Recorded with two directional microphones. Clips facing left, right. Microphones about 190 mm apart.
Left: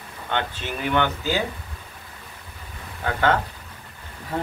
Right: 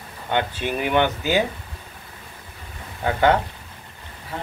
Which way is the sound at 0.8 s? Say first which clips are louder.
Right 2 dB; 15° right (ahead or behind).